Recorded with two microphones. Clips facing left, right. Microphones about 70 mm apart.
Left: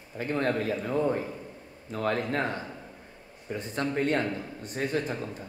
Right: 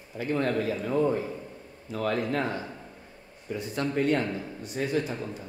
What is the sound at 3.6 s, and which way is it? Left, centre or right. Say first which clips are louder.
Speech: right 1 dB; left.